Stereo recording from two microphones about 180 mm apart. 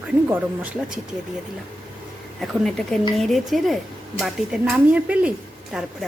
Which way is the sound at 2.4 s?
Centre (ahead or behind).